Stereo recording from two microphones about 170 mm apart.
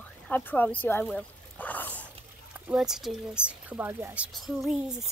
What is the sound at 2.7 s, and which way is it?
Speech, 5° right (ahead or behind).